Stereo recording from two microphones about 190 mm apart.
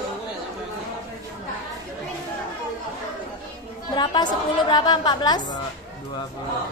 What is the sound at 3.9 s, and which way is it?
A woman's voice, 20° left (ahead or behind).